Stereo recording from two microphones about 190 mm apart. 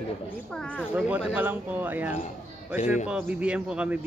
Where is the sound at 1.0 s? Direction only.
5° right (ahead or behind).